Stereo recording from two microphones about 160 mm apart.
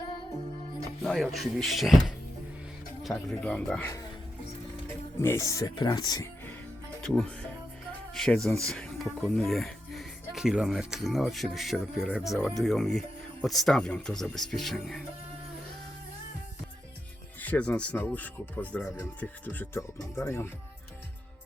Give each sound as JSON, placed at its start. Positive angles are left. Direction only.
{"t": 1.0, "sound": "speech", "side_deg": 0}
{"t": 5.2, "sound": "speech", "side_deg": 15}
{"t": 7.0, "sound": "speech", "side_deg": 5}
{"t": 17.4, "sound": "speech", "side_deg": 10}